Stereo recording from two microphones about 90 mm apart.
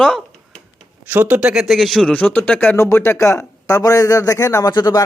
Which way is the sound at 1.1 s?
20° right (ahead or behind).